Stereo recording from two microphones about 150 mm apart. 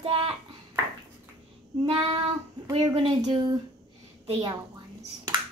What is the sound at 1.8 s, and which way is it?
A woman's voice, 35° right (ahead or behind).